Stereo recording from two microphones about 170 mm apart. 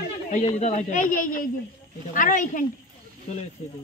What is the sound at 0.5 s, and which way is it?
Speech, 40° left (ahead or behind).